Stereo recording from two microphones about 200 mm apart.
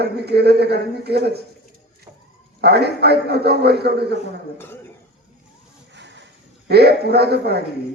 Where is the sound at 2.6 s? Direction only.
55° right (ahead or behind).